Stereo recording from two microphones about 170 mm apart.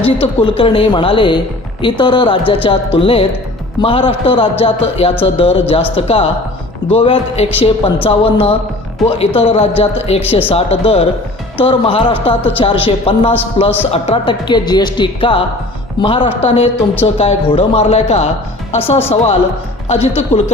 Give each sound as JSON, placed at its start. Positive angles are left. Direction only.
{"t": 0.0, "sound": "a man's voice", "side_deg": 35}
{"t": 6.9, "sound": "a man's voice", "side_deg": 30}